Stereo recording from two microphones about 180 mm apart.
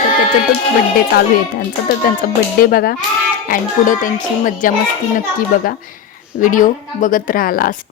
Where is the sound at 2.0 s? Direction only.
50° left (ahead or behind).